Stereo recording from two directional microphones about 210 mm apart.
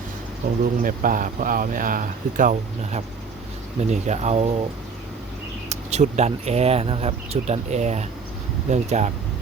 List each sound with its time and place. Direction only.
0.4 s speech: 40° right (ahead or behind)
5.6 s speech: 30° right (ahead or behind)